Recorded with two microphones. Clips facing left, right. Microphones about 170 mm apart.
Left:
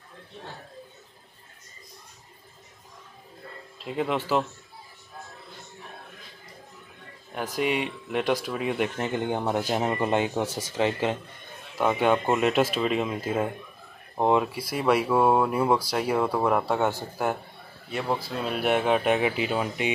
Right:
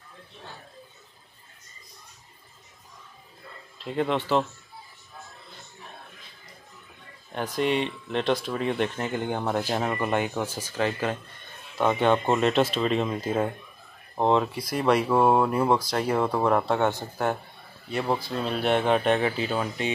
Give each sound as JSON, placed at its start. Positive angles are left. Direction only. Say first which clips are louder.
{"t": 3.8, "sound": "speech", "louder": "right 1 dB", "side_deg": 5}
{"t": 7.3, "sound": "speech", "louder": "right 1 dB", "side_deg": 10}
{"t": 11.8, "sound": "speech", "louder": "right 1 dB", "side_deg": 5}